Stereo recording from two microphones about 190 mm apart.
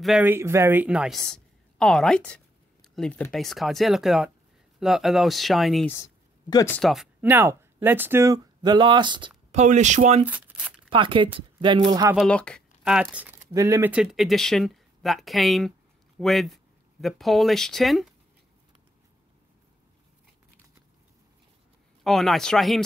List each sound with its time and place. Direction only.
0.0 s speech: 5° right (ahead or behind)
6.5 s speech: 15° left (ahead or behind)
6.8 s speech: centre (ahead or behind); by 9.3 s 25° right (ahead or behind)
9.5 s speech: 40° right (ahead or behind)
10.2 s speech: 5° right (ahead or behind)
10.9 s speech: 25° right (ahead or behind)
11.9 s speech: 15° right (ahead or behind)
12.2 s speech: 5° left (ahead or behind)
22.0 s speech: centre (ahead or behind)